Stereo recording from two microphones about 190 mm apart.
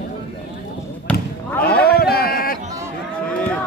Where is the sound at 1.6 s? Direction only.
55° left (ahead or behind).